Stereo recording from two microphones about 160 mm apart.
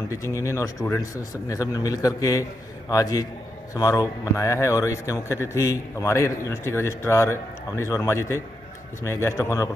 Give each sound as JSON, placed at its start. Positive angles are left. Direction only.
{"t": 0.1, "sound": "a man's voice", "side_deg": 20}